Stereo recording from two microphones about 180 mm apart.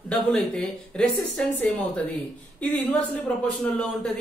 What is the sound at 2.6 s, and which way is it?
Speech, 10° left (ahead or behind).